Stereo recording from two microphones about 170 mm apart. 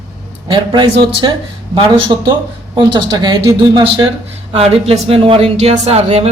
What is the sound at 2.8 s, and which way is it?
Speech, 25° right (ahead or behind).